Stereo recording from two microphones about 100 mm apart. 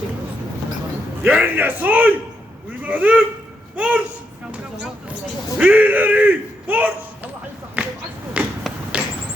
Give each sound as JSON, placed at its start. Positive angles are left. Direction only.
{"t": 1.2, "sound": "a man's voice", "side_deg": -15}
{"t": 5.5, "sound": "a sound", "side_deg": -15}
{"t": 8.9, "sound": "basketball bounce", "side_deg": -15}